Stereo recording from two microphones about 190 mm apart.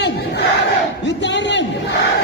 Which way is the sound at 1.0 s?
70° left (ahead or behind).